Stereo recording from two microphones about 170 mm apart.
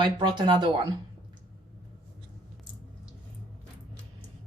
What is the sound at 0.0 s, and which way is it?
Speech, 25° right (ahead or behind).